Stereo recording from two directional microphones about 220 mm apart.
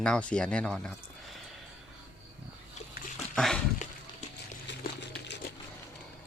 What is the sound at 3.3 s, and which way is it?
Dog, centre (ahead or behind).